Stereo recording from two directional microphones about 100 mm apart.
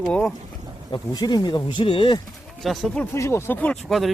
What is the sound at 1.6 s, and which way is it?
Speech, 55° left (ahead or behind).